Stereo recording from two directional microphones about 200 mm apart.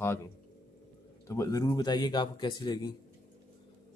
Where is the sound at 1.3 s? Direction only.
15° left (ahead or behind).